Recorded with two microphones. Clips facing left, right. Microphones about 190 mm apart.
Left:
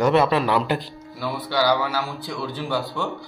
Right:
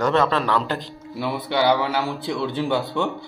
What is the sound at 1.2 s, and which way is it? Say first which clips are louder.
Speech: right 2 dB; 20° right (ahead or behind).